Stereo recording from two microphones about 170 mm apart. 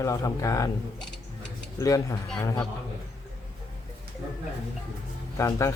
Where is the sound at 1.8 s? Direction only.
20° left (ahead or behind).